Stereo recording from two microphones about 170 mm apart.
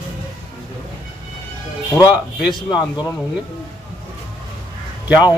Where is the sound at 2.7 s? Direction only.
25° left (ahead or behind).